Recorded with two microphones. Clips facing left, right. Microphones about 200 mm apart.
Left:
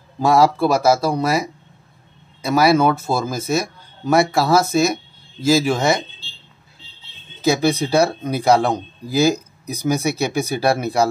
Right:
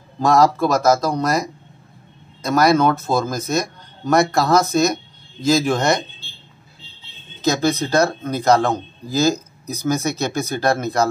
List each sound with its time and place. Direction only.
0.2 s speech: 10° left (ahead or behind)
7.4 s speech: 10° left (ahead or behind)